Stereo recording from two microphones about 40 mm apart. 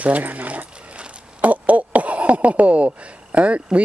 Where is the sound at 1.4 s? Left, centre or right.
Right.